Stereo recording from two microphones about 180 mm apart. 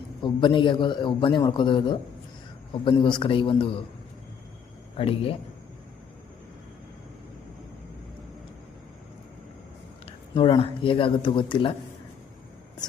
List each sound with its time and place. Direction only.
0.2 s a man's voice: 25° left (ahead or behind)
4.9 s speech: 30° left (ahead or behind)
10.1 s a man's voice: 25° left (ahead or behind)